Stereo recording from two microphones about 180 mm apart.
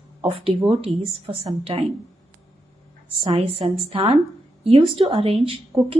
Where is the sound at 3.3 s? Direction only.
35° right (ahead or behind).